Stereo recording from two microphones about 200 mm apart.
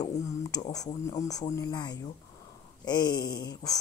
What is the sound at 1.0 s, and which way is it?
Speech, 15° left (ahead or behind).